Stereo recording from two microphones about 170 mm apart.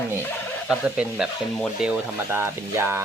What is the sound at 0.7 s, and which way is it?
Speech, 5° right (ahead or behind).